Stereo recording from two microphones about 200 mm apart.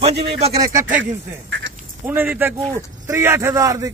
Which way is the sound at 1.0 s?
65° right (ahead or behind).